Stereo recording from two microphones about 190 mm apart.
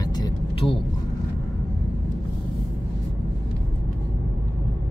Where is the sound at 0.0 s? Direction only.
20° left (ahead or behind).